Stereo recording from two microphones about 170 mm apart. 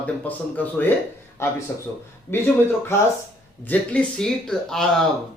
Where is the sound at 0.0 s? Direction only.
10° left (ahead or behind).